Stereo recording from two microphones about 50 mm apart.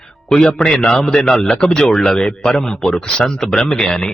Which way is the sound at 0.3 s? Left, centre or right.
Centre.